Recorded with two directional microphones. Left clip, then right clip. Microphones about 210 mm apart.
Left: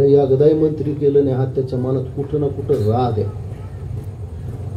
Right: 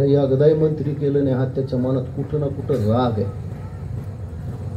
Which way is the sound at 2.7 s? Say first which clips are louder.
Left 2 dB; 35° left (ahead or behind).